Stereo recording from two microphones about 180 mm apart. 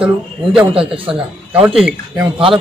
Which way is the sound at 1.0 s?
30° right (ahead or behind).